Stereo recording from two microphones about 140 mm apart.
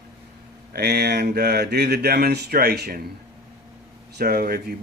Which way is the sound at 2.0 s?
90° right.